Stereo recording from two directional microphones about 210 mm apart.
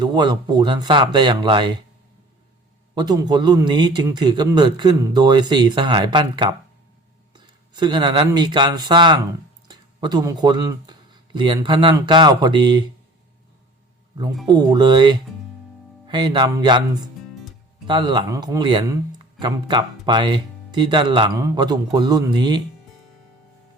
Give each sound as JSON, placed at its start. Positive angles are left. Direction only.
{"t": 0.0, "sound": "speech", "side_deg": -20}
{"t": 2.9, "sound": "speech", "side_deg": -20}
{"t": 14.4, "sound": "speech", "side_deg": -20}
{"t": 17.8, "sound": "speech", "side_deg": -20}